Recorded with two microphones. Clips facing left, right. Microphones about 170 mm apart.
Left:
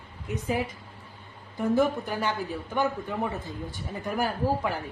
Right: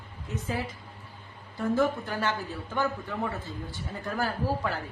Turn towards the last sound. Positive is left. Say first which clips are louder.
# left 3 dB
turn(degrees=15)  # may be behind; listen again after turning